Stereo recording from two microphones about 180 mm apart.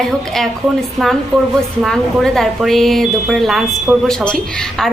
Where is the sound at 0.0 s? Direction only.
Centre (ahead or behind).